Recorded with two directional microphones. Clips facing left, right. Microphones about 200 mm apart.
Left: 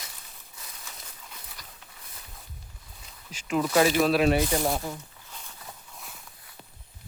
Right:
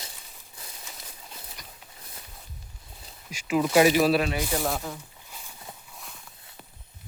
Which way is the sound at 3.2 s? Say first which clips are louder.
Right 2 dB; 5° right (ahead or behind).